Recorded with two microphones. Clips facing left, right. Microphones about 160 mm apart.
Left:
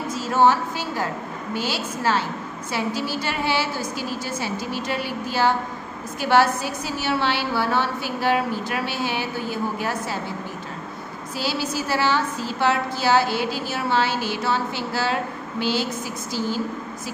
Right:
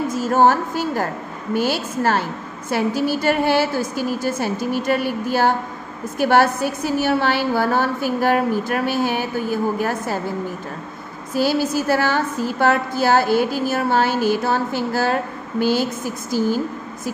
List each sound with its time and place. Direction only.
0.1 s a woman's voice: 50° right (ahead or behind)
11.3 s a woman's voice: 50° right (ahead or behind)